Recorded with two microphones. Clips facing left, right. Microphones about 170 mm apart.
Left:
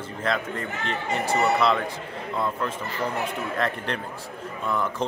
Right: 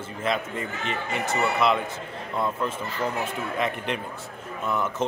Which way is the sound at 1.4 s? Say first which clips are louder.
Even; 5° right (ahead or behind).